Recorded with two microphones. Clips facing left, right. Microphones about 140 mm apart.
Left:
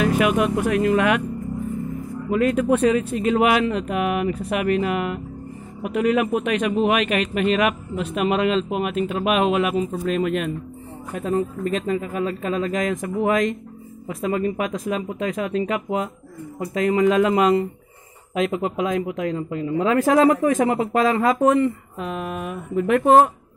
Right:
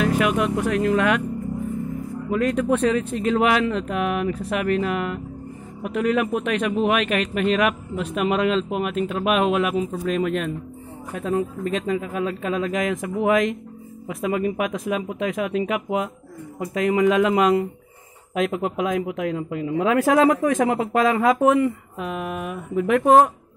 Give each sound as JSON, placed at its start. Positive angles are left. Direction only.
{"t": 0.0, "sound": "speech", "side_deg": 10}
{"t": 2.3, "sound": "speech", "side_deg": 5}